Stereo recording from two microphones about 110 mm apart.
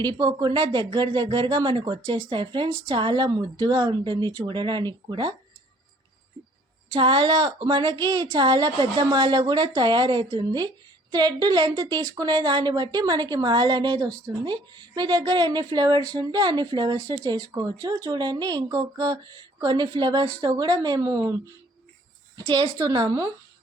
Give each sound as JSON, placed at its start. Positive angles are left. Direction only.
{"t": 0.0, "sound": "speech", "side_deg": -40}
{"t": 6.9, "sound": "a woman's voice", "side_deg": -50}
{"t": 22.4, "sound": "a woman's voice", "side_deg": -45}